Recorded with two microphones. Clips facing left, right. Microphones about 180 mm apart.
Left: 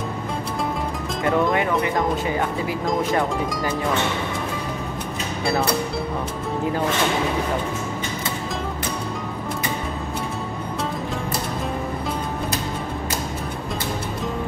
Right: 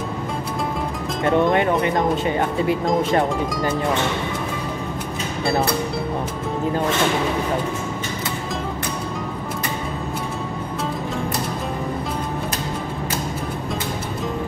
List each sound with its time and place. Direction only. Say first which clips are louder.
1.2 s speech: right 3 dB; 25° right (ahead or behind)